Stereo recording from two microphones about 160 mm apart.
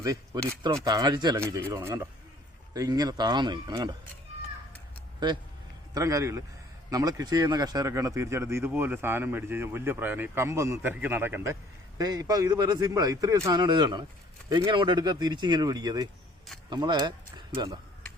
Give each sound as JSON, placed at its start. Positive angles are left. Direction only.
{"t": 0.9, "sound": "a man's voice", "side_deg": -25}
{"t": 5.2, "sound": "a man's voice", "side_deg": -30}
{"t": 11.9, "sound": "a man's voice", "side_deg": -25}